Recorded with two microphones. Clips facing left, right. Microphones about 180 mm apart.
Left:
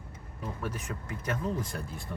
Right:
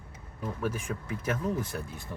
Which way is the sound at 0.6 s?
10° right (ahead or behind).